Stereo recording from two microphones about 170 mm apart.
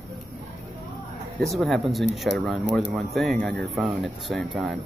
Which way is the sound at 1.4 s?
Centre (ahead or behind).